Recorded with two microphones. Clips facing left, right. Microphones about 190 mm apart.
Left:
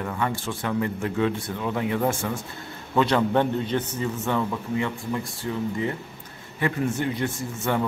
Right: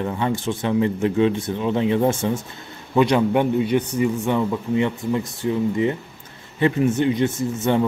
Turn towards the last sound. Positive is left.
turn(degrees=-20)  # may be behind; listen again after turning